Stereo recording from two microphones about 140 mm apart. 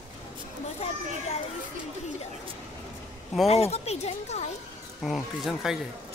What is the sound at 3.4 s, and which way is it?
Speech, 50° left (ahead or behind).